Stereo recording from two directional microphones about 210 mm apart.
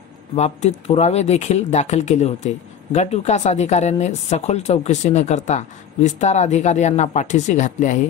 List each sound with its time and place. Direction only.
0.4 s speech: 30° left (ahead or behind)